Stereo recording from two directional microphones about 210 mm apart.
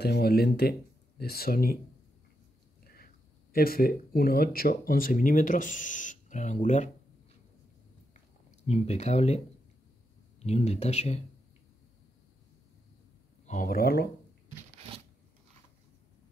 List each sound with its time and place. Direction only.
0.0 s speech: 50° left (ahead or behind)
3.5 s speech: 45° left (ahead or behind)
8.1 s a sound: 35° left (ahead or behind)
10.4 s speech: 30° left (ahead or behind)
13.5 s speech: 40° left (ahead or behind)